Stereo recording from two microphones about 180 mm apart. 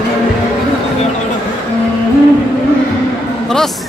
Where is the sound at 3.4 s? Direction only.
Centre (ahead or behind).